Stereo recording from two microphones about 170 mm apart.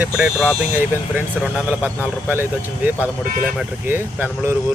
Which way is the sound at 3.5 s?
15° right (ahead or behind).